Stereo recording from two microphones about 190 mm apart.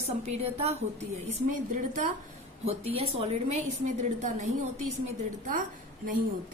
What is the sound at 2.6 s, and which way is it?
A woman's voice, 30° right (ahead or behind).